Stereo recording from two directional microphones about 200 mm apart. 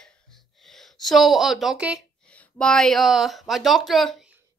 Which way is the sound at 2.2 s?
5° left (ahead or behind).